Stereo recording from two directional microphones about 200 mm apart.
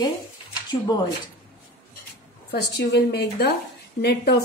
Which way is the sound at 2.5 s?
55° left (ahead or behind).